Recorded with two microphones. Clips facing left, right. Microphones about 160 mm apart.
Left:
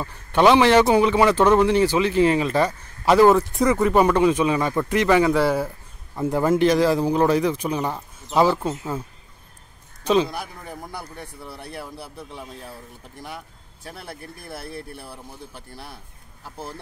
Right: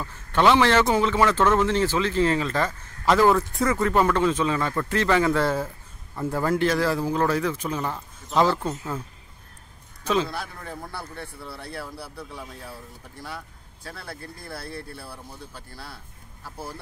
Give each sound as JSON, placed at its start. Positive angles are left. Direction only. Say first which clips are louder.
{"t": 0.0, "sound": "a man's voice", "louder": "left 3 dB", "side_deg": 15}
{"t": 10.0, "sound": "a man's voice", "louder": "left 5 dB", "side_deg": 20}